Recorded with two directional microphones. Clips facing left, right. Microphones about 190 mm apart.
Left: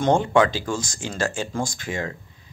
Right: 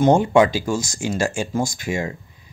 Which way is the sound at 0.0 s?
10° right (ahead or behind).